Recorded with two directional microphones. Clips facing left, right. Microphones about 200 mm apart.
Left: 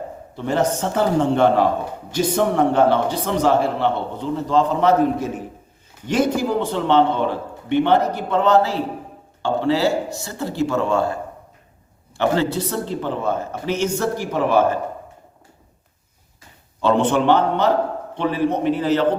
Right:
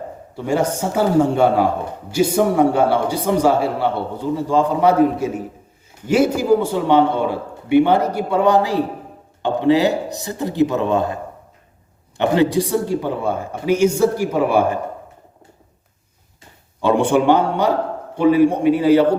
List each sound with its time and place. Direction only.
0.3 s a man's voice: 10° right (ahead or behind)
16.8 s a man's voice: 10° right (ahead or behind)